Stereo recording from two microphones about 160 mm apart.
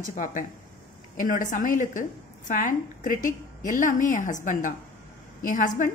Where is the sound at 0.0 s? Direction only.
55° left (ahead or behind).